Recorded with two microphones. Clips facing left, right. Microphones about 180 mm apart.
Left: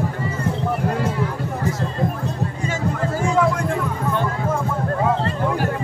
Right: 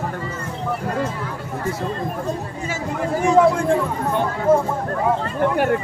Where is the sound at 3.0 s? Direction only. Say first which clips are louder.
Right 6 dB; 20° right (ahead or behind).